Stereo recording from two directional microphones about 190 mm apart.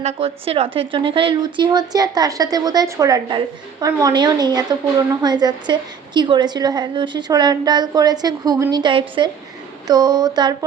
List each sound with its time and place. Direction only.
0.0 s a woman's voice: 30° right (ahead or behind)